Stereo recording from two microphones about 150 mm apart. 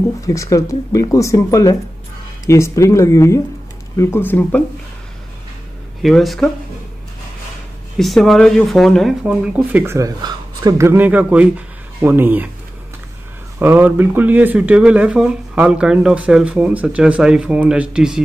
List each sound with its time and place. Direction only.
0.3 s speech: 20° left (ahead or behind)
6.0 s speech: centre (ahead or behind)
8.0 s speech: centre (ahead or behind)
13.6 s speech: 15° right (ahead or behind)